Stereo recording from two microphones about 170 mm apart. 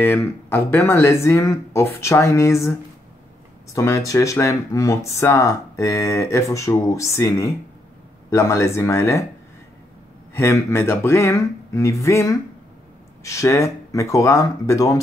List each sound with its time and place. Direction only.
0.0 s speech: 10° left (ahead or behind)
3.7 s speech: 20° left (ahead or behind)
10.3 s speech: 15° left (ahead or behind)